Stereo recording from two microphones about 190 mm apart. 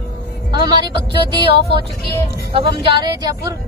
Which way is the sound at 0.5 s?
25° right (ahead or behind).